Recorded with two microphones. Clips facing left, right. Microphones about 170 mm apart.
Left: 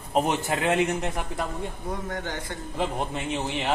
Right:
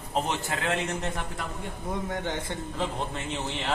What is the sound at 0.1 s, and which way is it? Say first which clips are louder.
Speech: left 5 dB; 15° left (ahead or behind).